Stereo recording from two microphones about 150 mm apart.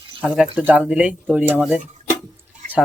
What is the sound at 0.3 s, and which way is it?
Speech, 10° right (ahead or behind).